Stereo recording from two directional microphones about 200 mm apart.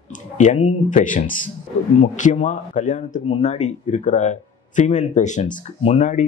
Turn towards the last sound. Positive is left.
turn(degrees=35)  # may be behind; listen again after turning